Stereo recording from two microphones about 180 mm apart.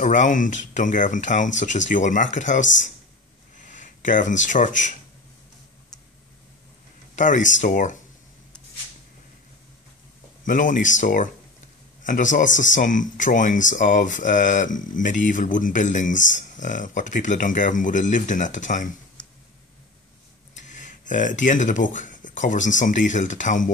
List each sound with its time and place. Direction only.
0.0 s speech: 45° left (ahead or behind)
3.7 s speech: 45° left (ahead or behind)
7.2 s speech: 45° left (ahead or behind)
10.4 s speech: 45° left (ahead or behind)
20.5 s speech: 45° left (ahead or behind)